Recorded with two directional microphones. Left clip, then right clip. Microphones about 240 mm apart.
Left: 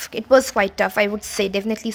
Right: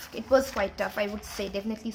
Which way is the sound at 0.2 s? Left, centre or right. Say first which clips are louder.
Left 9 dB; left.